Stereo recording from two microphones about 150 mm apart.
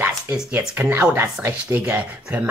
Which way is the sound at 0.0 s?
10° right (ahead or behind).